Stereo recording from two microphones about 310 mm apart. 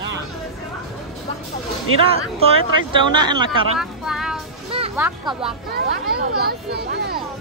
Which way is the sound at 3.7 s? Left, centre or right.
Centre.